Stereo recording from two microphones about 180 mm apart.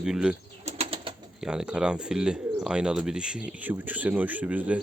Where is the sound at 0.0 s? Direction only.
5° right (ahead or behind).